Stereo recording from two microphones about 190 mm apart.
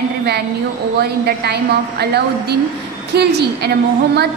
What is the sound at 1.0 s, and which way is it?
A woman's voice, 55° right (ahead or behind).